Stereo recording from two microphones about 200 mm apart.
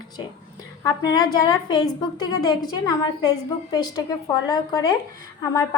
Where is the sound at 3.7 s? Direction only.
20° left (ahead or behind).